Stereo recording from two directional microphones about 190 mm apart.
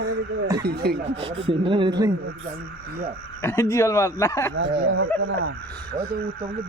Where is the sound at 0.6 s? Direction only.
55° right (ahead or behind).